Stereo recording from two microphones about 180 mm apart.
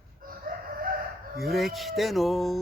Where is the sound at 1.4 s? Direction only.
Centre (ahead or behind).